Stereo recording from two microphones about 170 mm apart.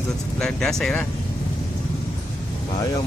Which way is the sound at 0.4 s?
5° left (ahead or behind).